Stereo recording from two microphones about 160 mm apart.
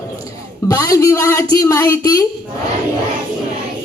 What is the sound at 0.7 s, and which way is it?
Speech, 20° left (ahead or behind).